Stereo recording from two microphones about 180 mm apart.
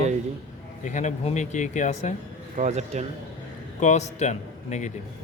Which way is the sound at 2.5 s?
40° right (ahead or behind).